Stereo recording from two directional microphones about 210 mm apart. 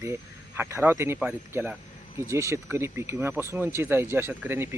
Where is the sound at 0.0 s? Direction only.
10° right (ahead or behind).